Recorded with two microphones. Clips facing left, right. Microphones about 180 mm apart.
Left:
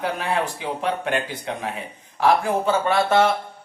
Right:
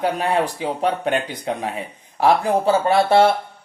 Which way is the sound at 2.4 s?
35° right (ahead or behind).